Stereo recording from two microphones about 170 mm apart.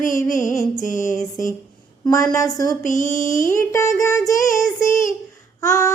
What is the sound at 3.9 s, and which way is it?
Child singing, 20° left (ahead or behind).